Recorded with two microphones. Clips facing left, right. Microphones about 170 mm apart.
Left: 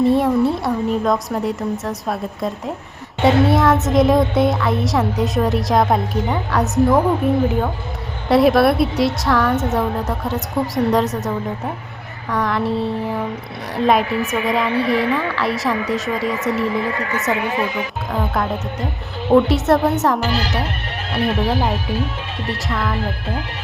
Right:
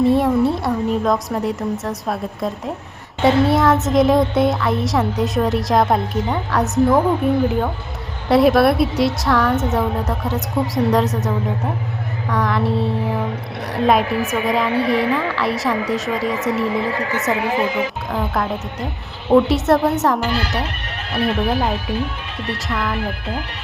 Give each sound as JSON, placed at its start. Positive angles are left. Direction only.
{"t": 0.0, "sound": "a woman's voice", "side_deg": 0}
{"t": 17.5, "sound": "speech", "side_deg": -25}
{"t": 18.1, "sound": "a child's voice", "side_deg": 0}